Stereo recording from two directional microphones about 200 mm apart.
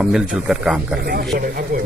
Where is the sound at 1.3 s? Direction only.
50° right (ahead or behind).